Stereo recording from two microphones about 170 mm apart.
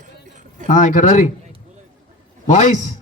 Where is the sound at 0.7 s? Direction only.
50° left (ahead or behind).